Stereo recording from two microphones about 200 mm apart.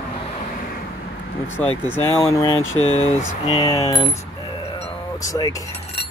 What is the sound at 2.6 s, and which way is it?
Speech, 90° left.